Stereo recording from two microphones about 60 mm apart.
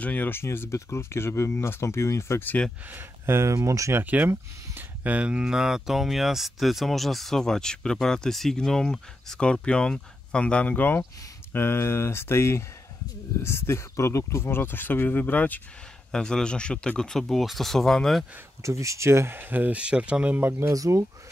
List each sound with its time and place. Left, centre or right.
0.0 s speech: left
0.3 s speech: left
2.9 s speech: right
3.5 s speech: right
4.0 s speech: right
5.4 s speech: centre; by 11.0 s left
11.5 s speech: left
16.1 s speech: centre
18.6 s speech: right
19.8 s speech: centre
20.3 s speech: right
20.7 s speech: right